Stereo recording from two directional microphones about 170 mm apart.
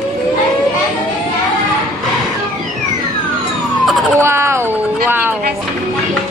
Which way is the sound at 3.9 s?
Centre (ahead or behind).